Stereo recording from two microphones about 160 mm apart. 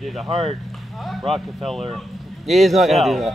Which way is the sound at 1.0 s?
Centre (ahead or behind).